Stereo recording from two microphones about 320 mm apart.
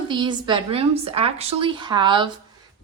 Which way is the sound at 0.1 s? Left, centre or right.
Centre.